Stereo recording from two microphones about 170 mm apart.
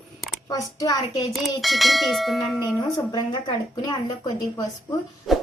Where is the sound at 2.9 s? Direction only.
25° left (ahead or behind).